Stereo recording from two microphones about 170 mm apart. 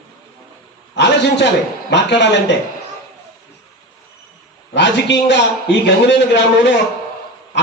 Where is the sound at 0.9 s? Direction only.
90° left.